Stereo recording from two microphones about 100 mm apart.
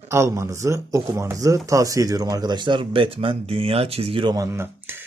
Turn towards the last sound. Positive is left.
turn(degrees=-25)  # may be behind; listen again after turning